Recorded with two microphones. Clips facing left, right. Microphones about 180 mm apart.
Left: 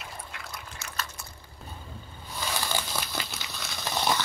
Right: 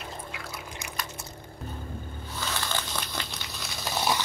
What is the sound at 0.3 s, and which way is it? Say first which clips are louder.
Liquid: right 3 dB; 5° right (ahead or behind).